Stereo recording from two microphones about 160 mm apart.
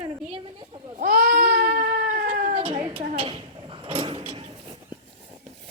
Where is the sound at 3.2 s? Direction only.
35° right (ahead or behind).